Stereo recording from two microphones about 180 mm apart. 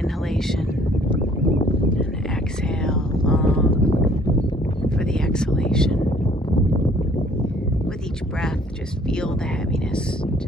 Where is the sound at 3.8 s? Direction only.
30° left (ahead or behind).